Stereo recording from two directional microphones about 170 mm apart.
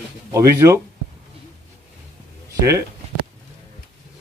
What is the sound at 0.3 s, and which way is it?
Speech, 20° right (ahead or behind).